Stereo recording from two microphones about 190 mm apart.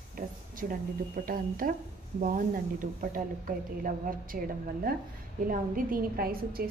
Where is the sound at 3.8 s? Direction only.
45° right (ahead or behind).